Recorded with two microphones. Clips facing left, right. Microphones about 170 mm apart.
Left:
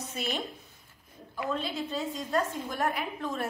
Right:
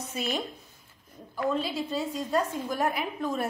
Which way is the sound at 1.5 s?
5° right (ahead or behind).